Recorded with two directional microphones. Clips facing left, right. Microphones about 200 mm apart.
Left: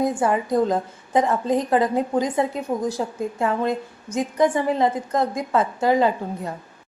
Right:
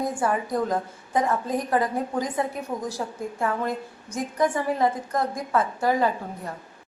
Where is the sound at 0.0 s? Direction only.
20° left (ahead or behind).